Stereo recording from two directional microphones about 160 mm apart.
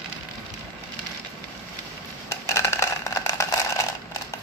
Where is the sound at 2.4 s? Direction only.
15° left (ahead or behind).